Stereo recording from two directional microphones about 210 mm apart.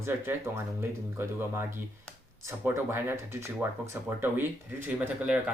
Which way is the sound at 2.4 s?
10° right (ahead or behind).